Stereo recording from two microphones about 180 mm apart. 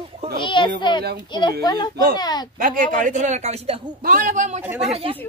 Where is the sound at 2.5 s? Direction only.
50° right (ahead or behind).